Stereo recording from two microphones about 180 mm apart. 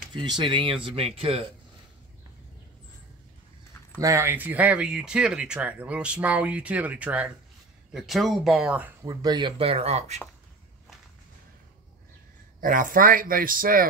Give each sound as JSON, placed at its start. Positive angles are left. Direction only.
{"t": 0.1, "sound": "speech", "side_deg": -25}
{"t": 4.0, "sound": "speech", "side_deg": -15}
{"t": 9.0, "sound": "speech", "side_deg": -20}
{"t": 12.5, "sound": "speech", "side_deg": -50}